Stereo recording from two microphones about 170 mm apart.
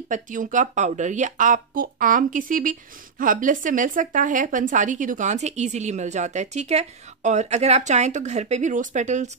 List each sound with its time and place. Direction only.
0.1 s speech: 50° right (ahead or behind)